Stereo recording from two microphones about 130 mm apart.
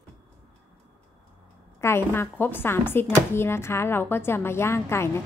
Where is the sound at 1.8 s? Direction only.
20° left (ahead or behind).